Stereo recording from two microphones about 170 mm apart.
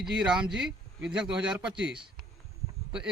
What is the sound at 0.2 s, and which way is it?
Speech, 5° right (ahead or behind).